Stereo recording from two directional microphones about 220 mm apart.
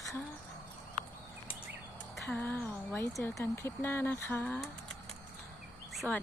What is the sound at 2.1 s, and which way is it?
Speech, 5° left (ahead or behind).